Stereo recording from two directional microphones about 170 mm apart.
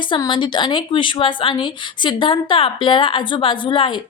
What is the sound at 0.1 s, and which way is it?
A woman's voice, 30° left (ahead or behind).